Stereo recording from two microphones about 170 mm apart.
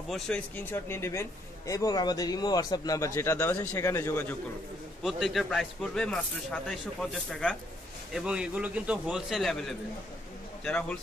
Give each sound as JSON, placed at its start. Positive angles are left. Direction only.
{"t": 0.1, "sound": "speech", "side_deg": 10}
{"t": 5.0, "sound": "speech", "side_deg": 0}